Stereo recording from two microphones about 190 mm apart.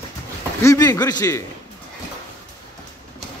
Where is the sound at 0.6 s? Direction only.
15° left (ahead or behind).